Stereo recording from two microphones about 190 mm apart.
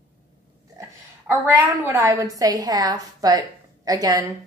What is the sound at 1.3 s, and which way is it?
A woman's voice, 15° right (ahead or behind).